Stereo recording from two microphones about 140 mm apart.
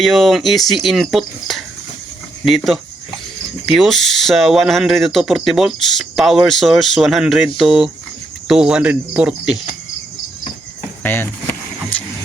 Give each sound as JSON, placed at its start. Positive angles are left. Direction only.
{"t": 0.0, "sound": "speech", "side_deg": 0}
{"t": 11.0, "sound": "speech", "side_deg": 15}